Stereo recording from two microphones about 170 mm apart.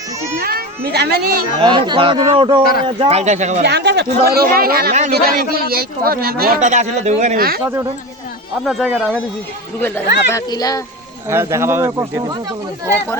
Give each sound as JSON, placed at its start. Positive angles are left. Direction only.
{"t": 0.3, "sound": "speech", "side_deg": -65}
{"t": 1.5, "sound": "a man's voice", "side_deg": -25}
{"t": 3.6, "sound": "a man's voice", "side_deg": -80}
{"t": 6.7, "sound": "speech", "side_deg": -45}
{"t": 7.3, "sound": "a man's voice", "side_deg": -60}
{"t": 8.6, "sound": "speech", "side_deg": 0}
{"t": 10.3, "sound": "speech", "side_deg": 20}
{"t": 11.3, "sound": "speech", "side_deg": -15}